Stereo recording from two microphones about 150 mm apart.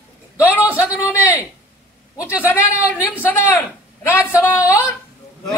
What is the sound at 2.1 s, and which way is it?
Speech, 10° right (ahead or behind).